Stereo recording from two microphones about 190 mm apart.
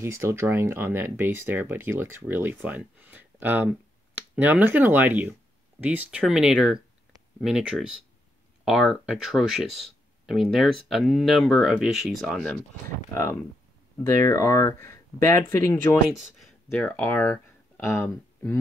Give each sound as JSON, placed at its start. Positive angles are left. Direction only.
{"t": 0.0, "sound": "speech", "side_deg": -15}
{"t": 13.1, "sound": "speech", "side_deg": 15}